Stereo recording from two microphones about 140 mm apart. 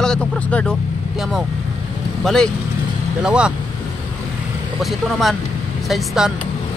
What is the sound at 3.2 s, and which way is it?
Speech, 5° right (ahead or behind).